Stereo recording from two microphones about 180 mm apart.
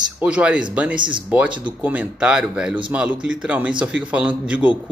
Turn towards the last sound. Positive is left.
turn(degrees=-5)  # may be behind; listen again after turning